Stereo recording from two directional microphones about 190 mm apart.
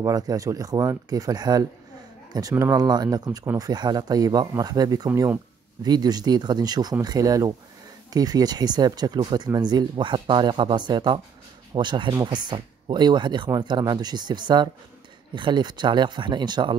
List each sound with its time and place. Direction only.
0.0 s speech: 20° right (ahead or behind)